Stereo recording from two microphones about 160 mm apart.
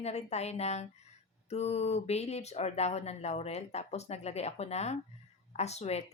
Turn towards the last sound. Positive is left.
turn(degrees=45)  # may be behind; listen again after turning